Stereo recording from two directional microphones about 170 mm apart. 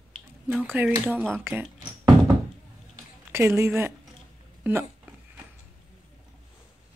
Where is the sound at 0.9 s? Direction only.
10° right (ahead or behind).